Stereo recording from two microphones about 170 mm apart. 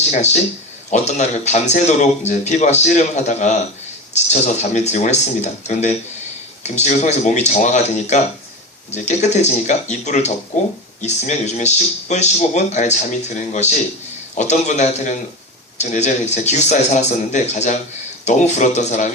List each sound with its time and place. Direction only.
0.1 s a man's voice: 40° left (ahead or behind)